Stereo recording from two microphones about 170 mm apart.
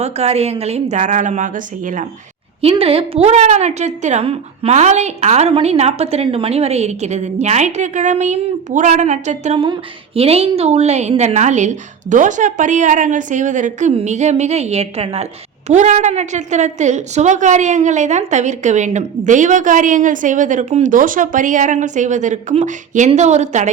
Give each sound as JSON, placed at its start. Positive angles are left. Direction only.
{"t": 0.0, "sound": "a woman's voice", "side_deg": -40}
{"t": 2.6, "sound": "a woman's voice", "side_deg": -35}